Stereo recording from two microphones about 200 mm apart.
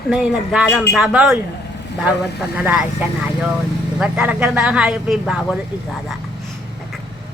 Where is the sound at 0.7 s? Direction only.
10° left (ahead or behind).